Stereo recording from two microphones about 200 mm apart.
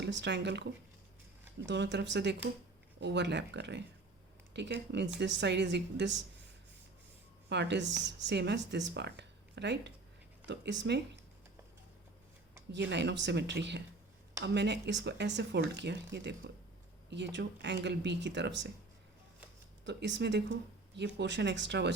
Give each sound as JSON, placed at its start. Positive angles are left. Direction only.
{"t": 0.0, "sound": "speech", "side_deg": -60}
{"t": 7.5, "sound": "speech", "side_deg": -60}
{"t": 12.7, "sound": "speech", "side_deg": -60}
{"t": 19.8, "sound": "speech", "side_deg": -60}